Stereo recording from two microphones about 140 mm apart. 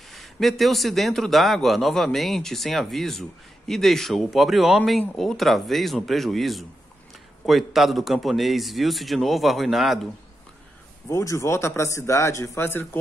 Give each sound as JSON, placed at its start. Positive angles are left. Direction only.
{"t": 0.1, "sound": "a man's voice", "side_deg": 0}
{"t": 11.1, "sound": "speech", "side_deg": 20}